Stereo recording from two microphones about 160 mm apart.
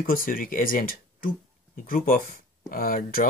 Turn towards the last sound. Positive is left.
turn(degrees=60)  # may be behind; listen again after turning